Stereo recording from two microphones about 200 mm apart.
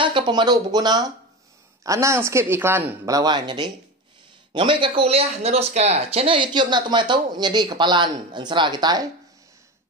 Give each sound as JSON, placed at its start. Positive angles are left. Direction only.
{"t": 0.0, "sound": "speech", "side_deg": -25}